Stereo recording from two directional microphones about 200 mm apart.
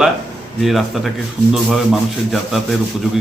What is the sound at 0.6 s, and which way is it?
Speech, centre (ahead or behind).